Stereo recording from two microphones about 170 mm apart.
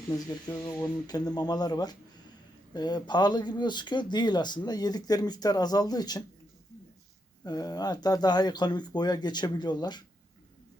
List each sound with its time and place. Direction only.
0.4 s speech: 20° left (ahead or behind)
7.4 s speech: 25° left (ahead or behind)